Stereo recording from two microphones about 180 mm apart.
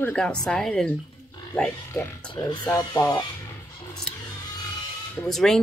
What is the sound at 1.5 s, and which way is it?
Speech, 15° left (ahead or behind).